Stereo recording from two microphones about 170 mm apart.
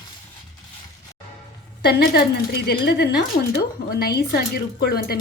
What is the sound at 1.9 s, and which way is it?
Speech, 65° left (ahead or behind).